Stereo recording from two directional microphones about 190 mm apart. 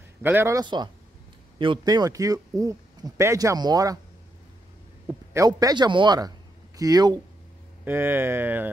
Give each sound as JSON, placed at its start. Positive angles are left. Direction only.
{"t": 0.2, "sound": "speech", "side_deg": -10}
{"t": 5.0, "sound": "speech", "side_deg": -15}